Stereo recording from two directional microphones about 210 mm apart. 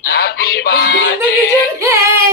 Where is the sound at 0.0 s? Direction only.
50° left (ahead or behind).